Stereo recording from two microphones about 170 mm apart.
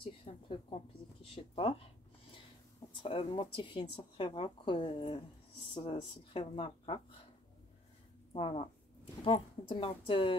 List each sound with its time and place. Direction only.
0.0 s a woman's voice: 30° left (ahead or behind)
2.9 s speech: 30° left (ahead or behind)
8.3 s a woman's voice: 30° left (ahead or behind)